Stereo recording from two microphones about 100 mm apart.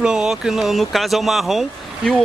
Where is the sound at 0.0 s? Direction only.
5° right (ahead or behind).